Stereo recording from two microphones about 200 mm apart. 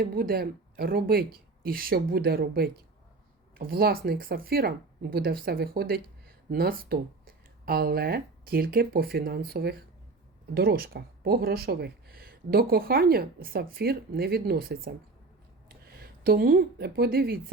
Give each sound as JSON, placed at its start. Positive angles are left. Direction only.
{"t": 0.0, "sound": "speech", "side_deg": -50}